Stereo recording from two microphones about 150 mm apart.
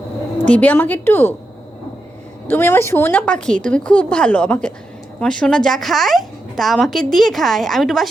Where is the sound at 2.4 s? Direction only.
15° left (ahead or behind).